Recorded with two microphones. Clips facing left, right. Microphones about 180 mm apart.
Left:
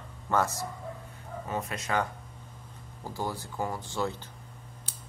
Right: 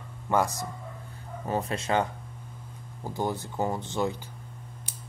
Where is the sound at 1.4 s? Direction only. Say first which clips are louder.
Right 5 dB; 30° right (ahead or behind).